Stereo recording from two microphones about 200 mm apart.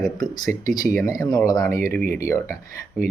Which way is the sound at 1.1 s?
20° left (ahead or behind).